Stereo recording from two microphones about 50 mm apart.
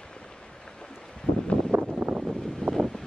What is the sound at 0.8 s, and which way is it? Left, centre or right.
Boat, centre.